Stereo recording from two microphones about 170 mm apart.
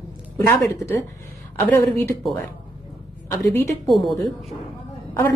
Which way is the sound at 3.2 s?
15° left (ahead or behind).